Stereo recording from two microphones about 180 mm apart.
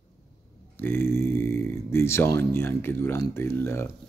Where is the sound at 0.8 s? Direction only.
15° left (ahead or behind).